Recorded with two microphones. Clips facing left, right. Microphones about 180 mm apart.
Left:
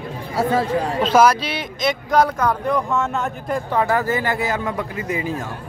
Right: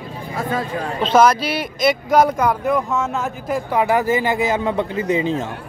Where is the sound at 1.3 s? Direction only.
5° right (ahead or behind).